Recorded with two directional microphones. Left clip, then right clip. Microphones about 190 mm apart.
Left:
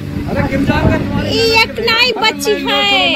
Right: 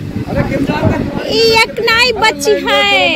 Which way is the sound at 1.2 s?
30° right (ahead or behind).